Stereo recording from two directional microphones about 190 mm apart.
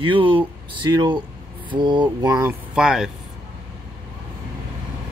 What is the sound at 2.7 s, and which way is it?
Speech, 5° right (ahead or behind).